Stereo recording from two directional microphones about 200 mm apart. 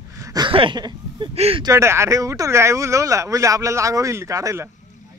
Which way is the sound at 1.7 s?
15° right (ahead or behind).